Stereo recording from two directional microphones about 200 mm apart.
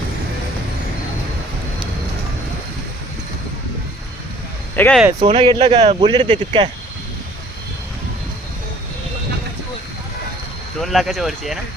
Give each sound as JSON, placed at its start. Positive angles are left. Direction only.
{"t": 4.7, "sound": "speech", "side_deg": 10}
{"t": 5.3, "sound": "a man's voice", "side_deg": -25}
{"t": 10.8, "sound": "speech", "side_deg": 0}